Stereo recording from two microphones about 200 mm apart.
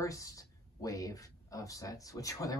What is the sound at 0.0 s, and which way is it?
Speech, 15° left (ahead or behind).